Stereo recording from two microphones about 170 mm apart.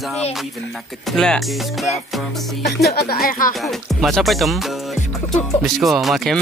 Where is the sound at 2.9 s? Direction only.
65° left (ahead or behind).